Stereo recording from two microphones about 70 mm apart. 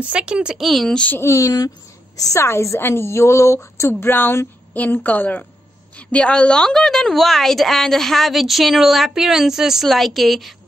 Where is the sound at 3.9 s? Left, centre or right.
Left.